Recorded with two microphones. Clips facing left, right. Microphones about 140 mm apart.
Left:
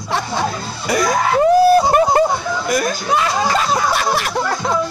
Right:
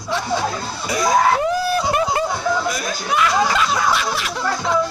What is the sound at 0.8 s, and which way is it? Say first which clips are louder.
Music: left 3 dB; 60° left (ahead or behind).